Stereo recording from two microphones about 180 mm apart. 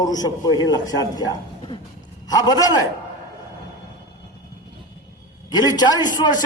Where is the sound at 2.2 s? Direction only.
20° left (ahead or behind).